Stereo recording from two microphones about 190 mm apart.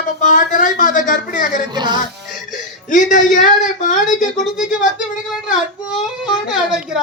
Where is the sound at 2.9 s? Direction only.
45° left (ahead or behind).